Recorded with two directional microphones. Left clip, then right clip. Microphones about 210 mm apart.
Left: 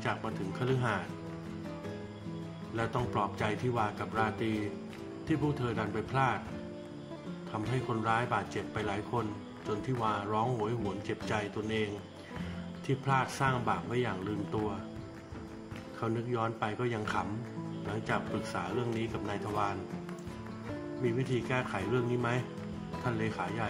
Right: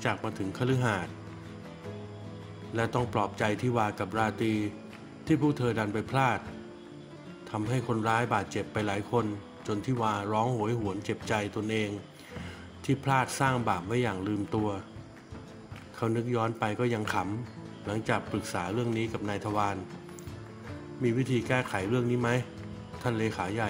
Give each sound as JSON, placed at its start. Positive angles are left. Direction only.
{"t": 0.0, "sound": "speech", "side_deg": -35}
{"t": 2.7, "sound": "speech", "side_deg": -35}
{"t": 7.5, "sound": "speech", "side_deg": -35}
{"t": 16.0, "sound": "speech", "side_deg": -35}
{"t": 21.0, "sound": "speech", "side_deg": -35}